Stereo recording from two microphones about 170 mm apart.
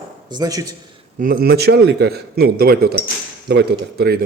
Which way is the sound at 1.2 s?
60° right (ahead or behind).